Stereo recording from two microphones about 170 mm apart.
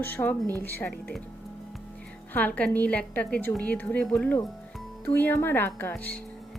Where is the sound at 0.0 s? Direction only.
10° left (ahead or behind).